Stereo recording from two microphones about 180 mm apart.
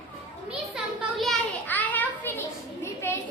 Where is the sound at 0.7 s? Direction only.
Centre (ahead or behind).